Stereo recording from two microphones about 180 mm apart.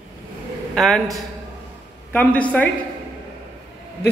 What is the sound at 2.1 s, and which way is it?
Speech, 10° left (ahead or behind).